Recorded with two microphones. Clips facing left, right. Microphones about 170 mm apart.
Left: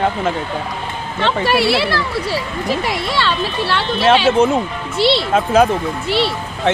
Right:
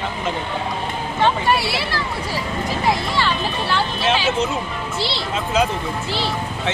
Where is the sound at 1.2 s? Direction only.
75° left (ahead or behind).